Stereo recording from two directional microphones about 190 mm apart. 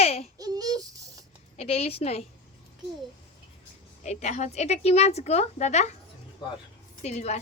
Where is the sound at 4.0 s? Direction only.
40° left (ahead or behind).